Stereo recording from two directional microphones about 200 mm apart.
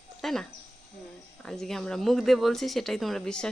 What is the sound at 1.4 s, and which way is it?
Speech, 5° left (ahead or behind).